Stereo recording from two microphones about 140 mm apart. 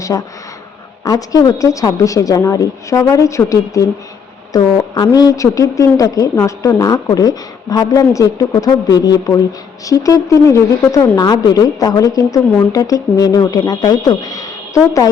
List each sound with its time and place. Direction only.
0.0 s a woman's voice: 25° left (ahead or behind)